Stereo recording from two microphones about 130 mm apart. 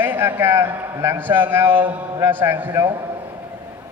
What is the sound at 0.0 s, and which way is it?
A man's voice, 15° right (ahead or behind).